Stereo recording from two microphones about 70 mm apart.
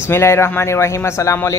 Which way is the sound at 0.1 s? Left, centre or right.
Left.